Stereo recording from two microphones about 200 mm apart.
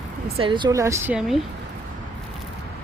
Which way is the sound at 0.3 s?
25° right (ahead or behind).